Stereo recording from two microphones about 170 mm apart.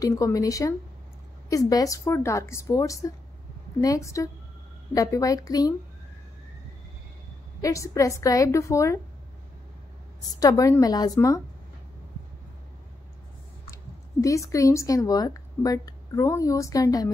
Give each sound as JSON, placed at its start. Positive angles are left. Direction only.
{"t": 0.0, "sound": "a woman's voice", "side_deg": 20}
{"t": 7.6, "sound": "a woman's voice", "side_deg": 20}
{"t": 10.4, "sound": "a woman's voice", "side_deg": 20}
{"t": 14.2, "sound": "a woman's voice", "side_deg": 20}